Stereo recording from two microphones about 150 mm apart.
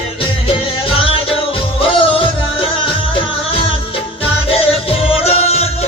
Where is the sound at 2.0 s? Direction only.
35° left (ahead or behind).